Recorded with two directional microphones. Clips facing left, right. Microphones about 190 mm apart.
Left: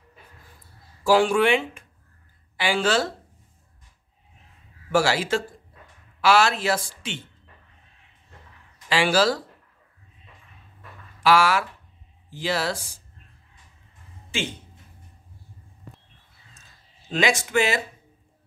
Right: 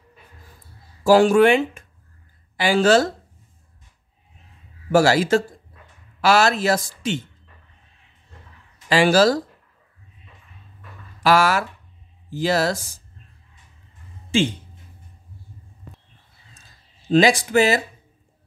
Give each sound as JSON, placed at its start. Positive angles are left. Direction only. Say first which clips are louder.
{"t": 1.0, "sound": "a man's voice", "louder": "right 5 dB", "side_deg": -40}
{"t": 4.9, "sound": "a man's voice", "louder": "right 6 dB", "side_deg": -40}
{"t": 8.8, "sound": "speech", "louder": "right 5 dB", "side_deg": -40}
{"t": 11.2, "sound": "speech", "louder": "right 2 dB", "side_deg": -40}
{"t": 17.1, "sound": "a man's voice", "louder": "right 7 dB", "side_deg": -35}